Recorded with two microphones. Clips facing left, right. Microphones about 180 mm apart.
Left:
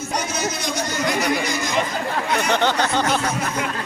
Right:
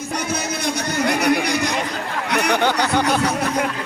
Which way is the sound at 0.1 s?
60° right (ahead or behind).